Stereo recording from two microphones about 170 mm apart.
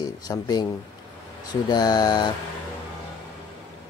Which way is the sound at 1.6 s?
25° left (ahead or behind).